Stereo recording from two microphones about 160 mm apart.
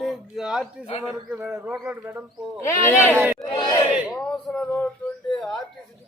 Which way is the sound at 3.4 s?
30° left (ahead or behind).